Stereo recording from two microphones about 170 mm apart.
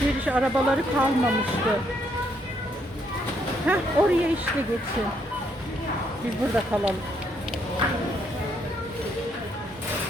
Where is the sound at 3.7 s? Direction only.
10° right (ahead or behind).